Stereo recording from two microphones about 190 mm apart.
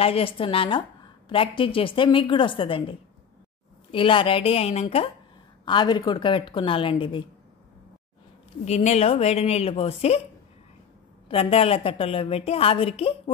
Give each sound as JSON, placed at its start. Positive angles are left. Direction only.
{"t": 0.0, "sound": "a woman's voice", "side_deg": 30}
{"t": 8.6, "sound": "a woman's voice", "side_deg": 35}
{"t": 11.2, "sound": "a woman's voice", "side_deg": 30}